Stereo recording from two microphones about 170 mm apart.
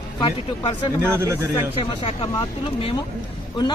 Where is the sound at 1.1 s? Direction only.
15° right (ahead or behind).